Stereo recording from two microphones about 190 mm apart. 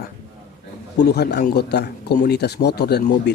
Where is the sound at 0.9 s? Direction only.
60° left (ahead or behind).